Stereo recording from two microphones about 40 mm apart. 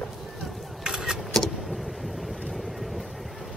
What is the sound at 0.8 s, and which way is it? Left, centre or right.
Vehicle, centre.